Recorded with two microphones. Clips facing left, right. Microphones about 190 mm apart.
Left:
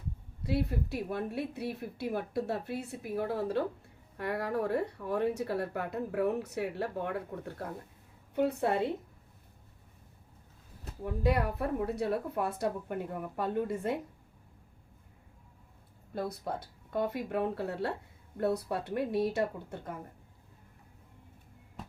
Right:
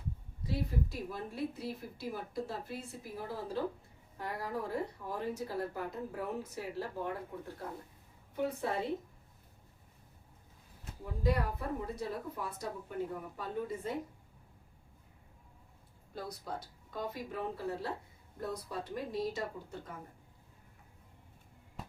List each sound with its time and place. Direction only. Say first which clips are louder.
0.4 s speech: left 4 dB; 65° left (ahead or behind)
11.0 s speech: left 4 dB; 65° left (ahead or behind)
16.1 s speech: left 6 dB; 60° left (ahead or behind)